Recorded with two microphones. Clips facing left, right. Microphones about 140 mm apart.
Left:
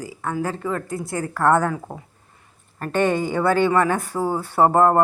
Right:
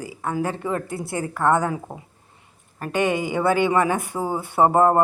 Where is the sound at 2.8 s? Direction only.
10° right (ahead or behind).